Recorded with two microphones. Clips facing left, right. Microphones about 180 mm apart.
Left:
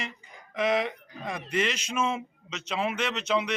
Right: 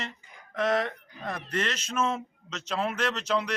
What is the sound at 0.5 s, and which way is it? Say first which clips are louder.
Speech: left 1 dB; 10° left (ahead or behind).